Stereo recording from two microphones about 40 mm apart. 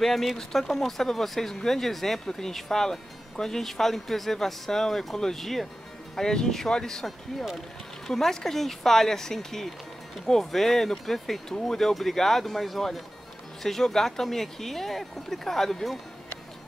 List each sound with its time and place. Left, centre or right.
0.0 s speech: centre